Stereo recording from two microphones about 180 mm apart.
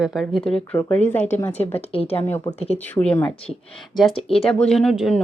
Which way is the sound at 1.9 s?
30° left (ahead or behind).